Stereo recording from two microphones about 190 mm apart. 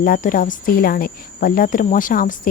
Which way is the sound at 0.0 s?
45° left (ahead or behind).